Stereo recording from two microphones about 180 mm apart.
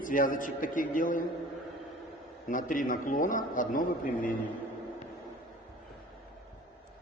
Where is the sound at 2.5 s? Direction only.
50° left (ahead or behind).